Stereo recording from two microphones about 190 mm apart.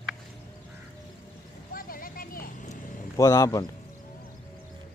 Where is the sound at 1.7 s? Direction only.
50° left (ahead or behind).